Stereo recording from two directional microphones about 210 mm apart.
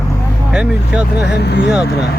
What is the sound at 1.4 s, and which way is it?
Speech, 55° left (ahead or behind).